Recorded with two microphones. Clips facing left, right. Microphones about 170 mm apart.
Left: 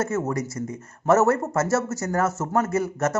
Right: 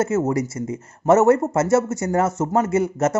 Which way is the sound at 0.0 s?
20° right (ahead or behind).